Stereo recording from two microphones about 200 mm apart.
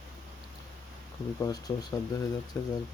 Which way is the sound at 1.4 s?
20° left (ahead or behind).